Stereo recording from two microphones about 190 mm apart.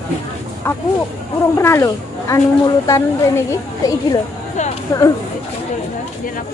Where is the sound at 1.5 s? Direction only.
15° left (ahead or behind).